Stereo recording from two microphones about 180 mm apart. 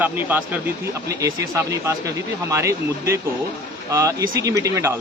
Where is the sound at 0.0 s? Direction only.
10° right (ahead or behind).